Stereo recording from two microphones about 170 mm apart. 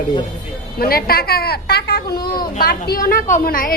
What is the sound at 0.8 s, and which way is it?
A woman's voice, 60° left (ahead or behind).